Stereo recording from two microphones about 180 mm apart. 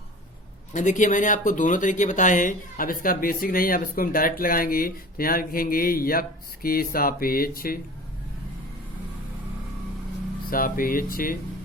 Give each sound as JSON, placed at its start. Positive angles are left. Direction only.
{"t": 0.7, "sound": "speech", "side_deg": 45}
{"t": 10.5, "sound": "speech", "side_deg": 50}